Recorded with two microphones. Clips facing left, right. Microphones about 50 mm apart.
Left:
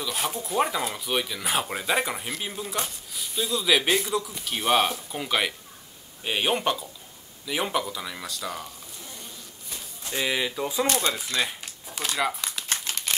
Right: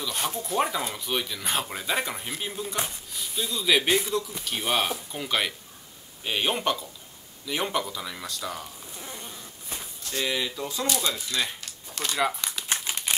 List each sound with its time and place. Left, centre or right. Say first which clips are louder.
0.0 s speech: left 1 dB; centre
9.0 s a sound: right 4 dB; right
10.0 s speech: left 2 dB; centre
10.9 s speech: right 1 dB; left
11.1 s a sound: left 2 dB; centre
12.1 s speech: right 1 dB; centre
12.6 s typewriter: right 2 dB; centre